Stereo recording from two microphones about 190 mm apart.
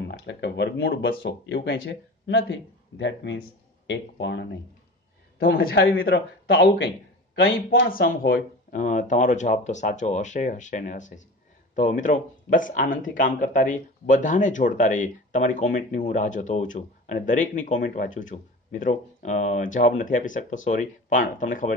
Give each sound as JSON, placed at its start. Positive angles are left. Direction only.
{"t": 0.1, "sound": "speech", "side_deg": 65}
{"t": 5.4, "sound": "speech", "side_deg": 50}
{"t": 7.4, "sound": "speech", "side_deg": 55}